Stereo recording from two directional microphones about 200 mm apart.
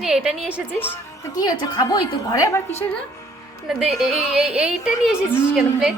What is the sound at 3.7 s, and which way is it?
A woman's voice, centre (ahead or behind).